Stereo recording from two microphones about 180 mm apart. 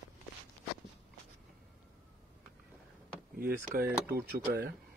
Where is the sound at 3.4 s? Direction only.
55° right (ahead or behind).